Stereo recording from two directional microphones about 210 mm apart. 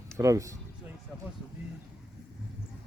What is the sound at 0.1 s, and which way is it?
Speech, 15° right (ahead or behind).